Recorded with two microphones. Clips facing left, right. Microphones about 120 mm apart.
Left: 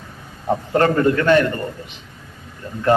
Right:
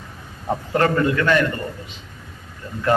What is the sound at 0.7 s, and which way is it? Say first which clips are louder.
Speech: left 2 dB; 35° left (ahead or behind).